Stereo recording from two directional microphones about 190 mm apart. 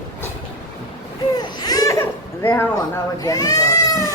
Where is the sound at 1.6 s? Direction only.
20° left (ahead or behind).